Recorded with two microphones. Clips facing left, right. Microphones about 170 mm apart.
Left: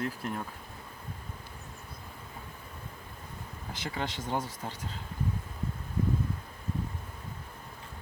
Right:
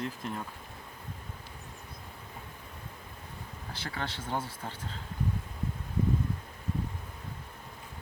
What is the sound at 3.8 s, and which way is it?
Speech, 15° left (ahead or behind).